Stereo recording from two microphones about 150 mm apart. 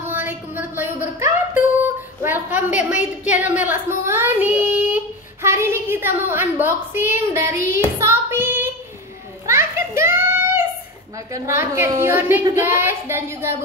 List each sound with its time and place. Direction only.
0.1 s a sound: 15° right (ahead or behind)
2.2 s a woman's voice: 10° right (ahead or behind)
9.5 s children playing: 20° right (ahead or behind)
11.3 s a woman's voice: 20° right (ahead or behind)